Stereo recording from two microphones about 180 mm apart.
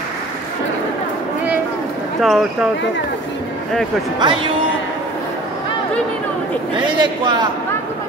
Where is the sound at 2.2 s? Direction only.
Centre (ahead or behind).